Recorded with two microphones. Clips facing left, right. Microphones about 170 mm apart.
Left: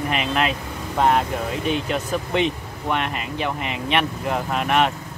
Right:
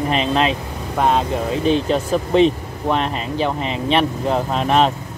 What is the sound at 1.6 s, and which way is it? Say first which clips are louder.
Speech: right 7 dB; 30° right (ahead or behind).